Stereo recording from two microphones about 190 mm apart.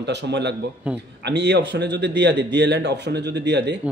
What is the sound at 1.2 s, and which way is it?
A man's voice, 65° right (ahead or behind).